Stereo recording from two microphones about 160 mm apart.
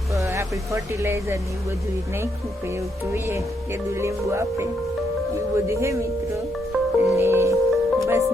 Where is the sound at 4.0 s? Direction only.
15° right (ahead or behind).